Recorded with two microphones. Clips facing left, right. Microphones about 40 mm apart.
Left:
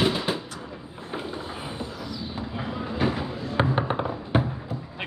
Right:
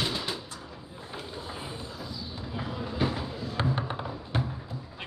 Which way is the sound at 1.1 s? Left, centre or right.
Left.